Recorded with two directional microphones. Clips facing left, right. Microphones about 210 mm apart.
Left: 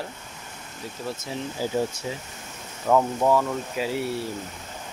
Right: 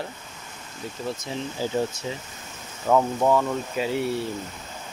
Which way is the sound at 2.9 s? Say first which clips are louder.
Even; centre (ahead or behind).